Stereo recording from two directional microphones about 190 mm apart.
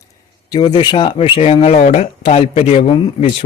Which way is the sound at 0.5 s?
25° left (ahead or behind).